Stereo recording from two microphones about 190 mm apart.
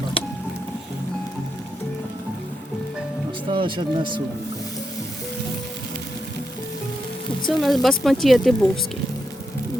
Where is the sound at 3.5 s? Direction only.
25° right (ahead or behind).